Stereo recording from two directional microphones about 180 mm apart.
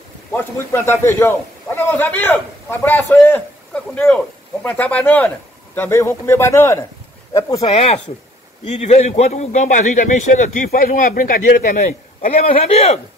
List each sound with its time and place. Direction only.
0.3 s a man's voice: 15° left (ahead or behind)
7.6 s a man's voice: 35° left (ahead or behind)